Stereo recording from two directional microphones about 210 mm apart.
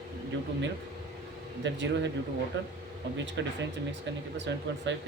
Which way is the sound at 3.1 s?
60° right (ahead or behind).